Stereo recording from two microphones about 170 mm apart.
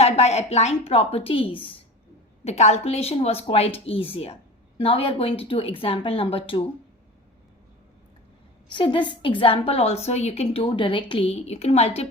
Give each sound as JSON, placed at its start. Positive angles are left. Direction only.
{"t": 0.0, "sound": "a woman's voice", "side_deg": 40}
{"t": 8.7, "sound": "a woman's voice", "side_deg": 30}